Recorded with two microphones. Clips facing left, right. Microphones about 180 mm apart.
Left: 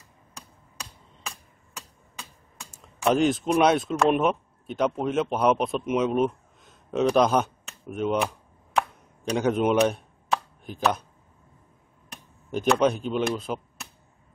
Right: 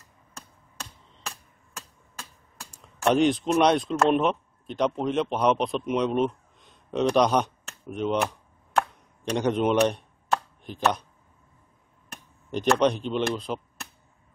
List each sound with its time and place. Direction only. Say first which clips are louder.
0.4 s hammer: right 1 dB; centre (ahead or behind)
3.0 s speech: right 1 dB; centre (ahead or behind)
8.7 s chop: right 1 dB; centre (ahead or behind)
12.1 s speech: left 1 dB; centre (ahead or behind)